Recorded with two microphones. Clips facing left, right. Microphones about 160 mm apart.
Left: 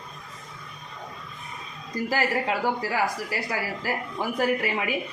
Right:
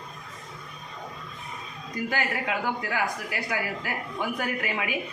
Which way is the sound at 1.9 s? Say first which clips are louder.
Left 4 dB; 30° left (ahead or behind).